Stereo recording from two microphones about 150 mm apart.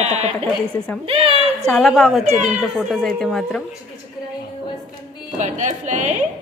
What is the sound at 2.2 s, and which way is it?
Speech, 45° right (ahead or behind).